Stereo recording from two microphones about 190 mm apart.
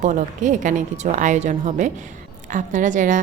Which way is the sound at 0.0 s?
40° right (ahead or behind).